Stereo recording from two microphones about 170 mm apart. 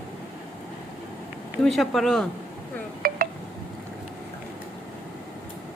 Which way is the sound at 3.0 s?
60° right (ahead or behind).